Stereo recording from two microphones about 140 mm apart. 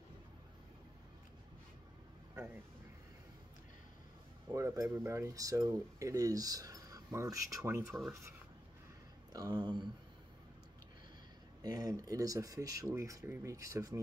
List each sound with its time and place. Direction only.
4.5 s speech: 20° right (ahead or behind)
9.3 s speech: 30° right (ahead or behind)
11.6 s speech: 25° right (ahead or behind)